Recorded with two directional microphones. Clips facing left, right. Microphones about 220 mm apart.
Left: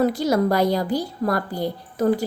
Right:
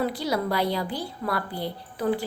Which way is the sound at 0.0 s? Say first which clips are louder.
Left 7 dB; 45° left (ahead or behind).